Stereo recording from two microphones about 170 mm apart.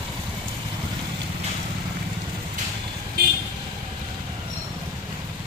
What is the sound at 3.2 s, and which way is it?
Vehicle, 65° right (ahead or behind).